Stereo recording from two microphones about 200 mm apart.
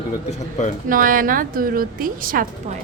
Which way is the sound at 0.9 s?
45° right (ahead or behind).